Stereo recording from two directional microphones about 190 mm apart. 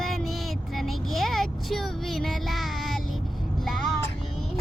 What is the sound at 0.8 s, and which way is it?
Child singing, centre (ahead or behind).